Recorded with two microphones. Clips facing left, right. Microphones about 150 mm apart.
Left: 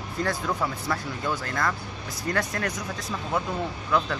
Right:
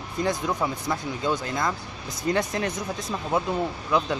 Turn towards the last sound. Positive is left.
turn(degrees=-20)  # may be behind; listen again after turning